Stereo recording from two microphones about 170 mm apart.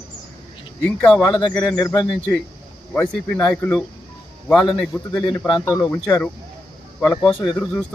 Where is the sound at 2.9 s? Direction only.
10° left (ahead or behind).